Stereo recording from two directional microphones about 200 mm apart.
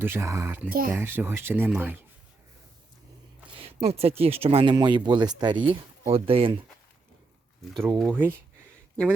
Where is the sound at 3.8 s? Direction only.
30° right (ahead or behind).